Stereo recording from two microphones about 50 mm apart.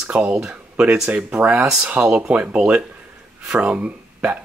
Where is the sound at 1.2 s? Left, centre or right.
Right.